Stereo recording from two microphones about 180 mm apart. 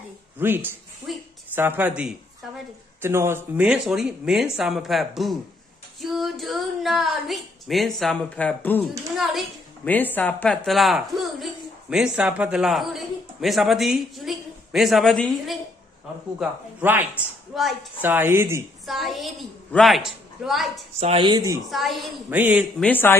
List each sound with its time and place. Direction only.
0.4 s a man's voice: 10° right (ahead or behind)
9.9 s a woman's voice: 10° left (ahead or behind)
16.3 s a man's voice: 10° right (ahead or behind)
18.0 s a man's voice: 15° right (ahead or behind)
18.9 s a woman's voice: centre (ahead or behind)
21.0 s speech: 30° right (ahead or behind)
21.6 s a man's voice: centre (ahead or behind)
22.8 s a man's voice: 10° left (ahead or behind)